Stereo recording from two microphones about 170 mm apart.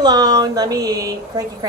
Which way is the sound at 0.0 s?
25° right (ahead or behind).